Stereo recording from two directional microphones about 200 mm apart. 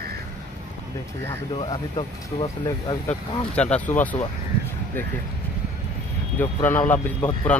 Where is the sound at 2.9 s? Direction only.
5° left (ahead or behind).